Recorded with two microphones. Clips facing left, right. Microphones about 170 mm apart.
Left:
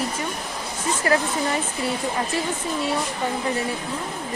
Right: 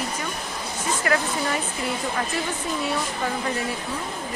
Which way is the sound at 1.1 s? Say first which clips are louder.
Left 3 dB; 30° left (ahead or behind).